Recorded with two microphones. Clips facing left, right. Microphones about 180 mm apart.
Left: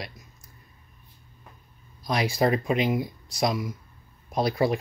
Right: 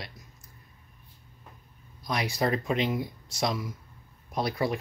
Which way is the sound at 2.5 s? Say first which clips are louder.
Left 3 dB; 10° left (ahead or behind).